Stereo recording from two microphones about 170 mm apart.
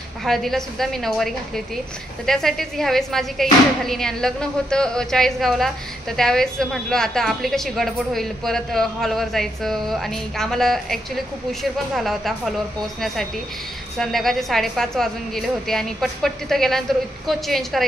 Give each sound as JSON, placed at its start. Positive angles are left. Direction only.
{"t": 0.2, "sound": "a woman's voice", "side_deg": 0}